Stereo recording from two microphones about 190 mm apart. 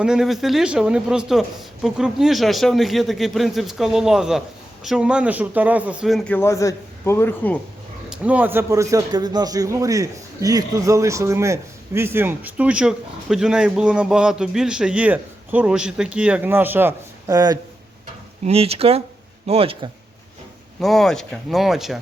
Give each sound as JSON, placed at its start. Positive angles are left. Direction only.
{"t": 0.0, "sound": "speech", "side_deg": -5}
{"t": 8.1, "sound": "a man's voice", "side_deg": -5}
{"t": 18.4, "sound": "speech", "side_deg": -30}
{"t": 20.8, "sound": "speech", "side_deg": 0}